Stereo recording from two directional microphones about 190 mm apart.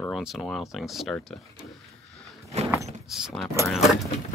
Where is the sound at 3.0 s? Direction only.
Centre (ahead or behind).